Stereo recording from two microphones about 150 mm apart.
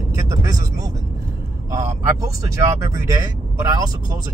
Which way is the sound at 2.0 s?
20° right (ahead or behind).